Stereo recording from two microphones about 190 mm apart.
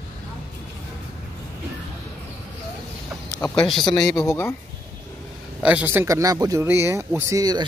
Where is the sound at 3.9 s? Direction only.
15° left (ahead or behind).